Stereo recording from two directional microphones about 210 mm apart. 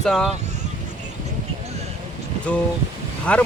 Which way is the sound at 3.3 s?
5° left (ahead or behind).